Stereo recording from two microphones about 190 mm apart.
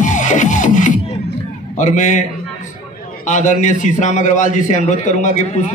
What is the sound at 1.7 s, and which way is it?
Speech, 40° left (ahead or behind).